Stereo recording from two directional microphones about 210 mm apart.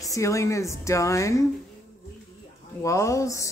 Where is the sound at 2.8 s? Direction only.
15° left (ahead or behind).